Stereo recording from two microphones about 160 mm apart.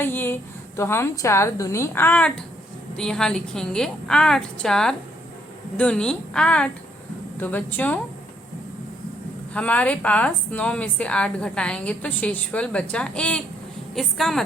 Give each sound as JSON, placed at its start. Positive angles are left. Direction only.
{"t": 0.0, "sound": "a woman's voice", "side_deg": 15}
{"t": 9.5, "sound": "a woman's voice", "side_deg": 10}